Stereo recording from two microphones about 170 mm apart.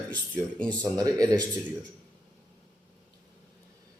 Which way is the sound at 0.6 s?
10° left (ahead or behind).